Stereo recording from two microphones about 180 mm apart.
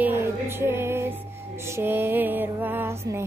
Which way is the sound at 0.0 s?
10° right (ahead or behind).